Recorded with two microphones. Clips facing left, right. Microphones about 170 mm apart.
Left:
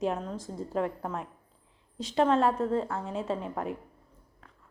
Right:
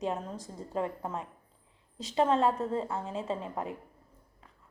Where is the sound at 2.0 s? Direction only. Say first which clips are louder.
Left 2 dB; centre (ahead or behind).